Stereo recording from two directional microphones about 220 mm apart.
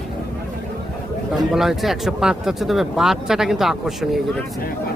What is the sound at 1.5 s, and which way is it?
Speech, centre (ahead or behind).